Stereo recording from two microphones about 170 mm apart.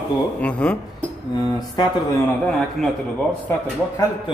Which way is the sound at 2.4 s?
Centre (ahead or behind).